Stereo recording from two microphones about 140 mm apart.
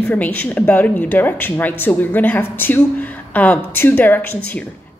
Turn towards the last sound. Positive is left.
turn(degrees=15)  # may be behind; listen again after turning